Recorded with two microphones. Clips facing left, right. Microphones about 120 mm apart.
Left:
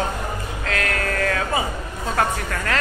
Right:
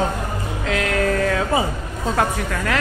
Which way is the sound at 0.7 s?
15° right (ahead or behind).